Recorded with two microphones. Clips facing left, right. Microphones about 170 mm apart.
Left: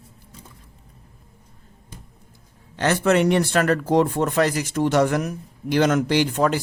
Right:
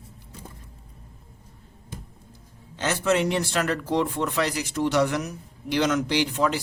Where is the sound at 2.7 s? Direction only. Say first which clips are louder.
Left 5 dB; 65° left (ahead or behind); by 6.6 s 50° left (ahead or behind).